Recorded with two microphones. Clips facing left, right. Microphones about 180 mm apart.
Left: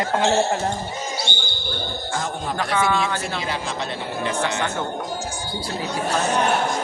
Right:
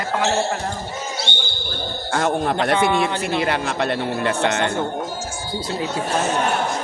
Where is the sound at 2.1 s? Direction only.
65° right (ahead or behind).